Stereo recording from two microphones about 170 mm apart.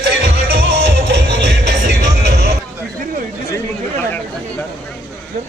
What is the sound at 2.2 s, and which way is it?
Music, 80° right.